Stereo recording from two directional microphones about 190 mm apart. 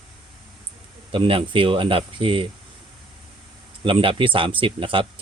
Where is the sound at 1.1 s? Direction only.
30° right (ahead or behind).